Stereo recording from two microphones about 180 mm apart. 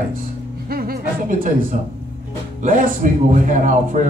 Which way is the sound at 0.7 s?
55° right (ahead or behind).